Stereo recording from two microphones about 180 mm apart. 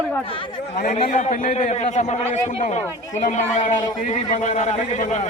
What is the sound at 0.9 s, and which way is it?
A man's voice, 35° left (ahead or behind).